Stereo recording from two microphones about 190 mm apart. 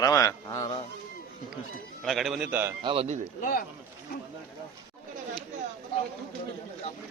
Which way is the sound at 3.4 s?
50° left (ahead or behind).